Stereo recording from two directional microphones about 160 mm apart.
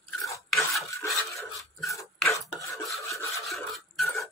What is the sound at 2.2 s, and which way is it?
Filing, centre (ahead or behind).